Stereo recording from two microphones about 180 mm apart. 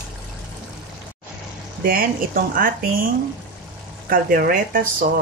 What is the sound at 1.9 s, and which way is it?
A woman's voice, 55° right (ahead or behind).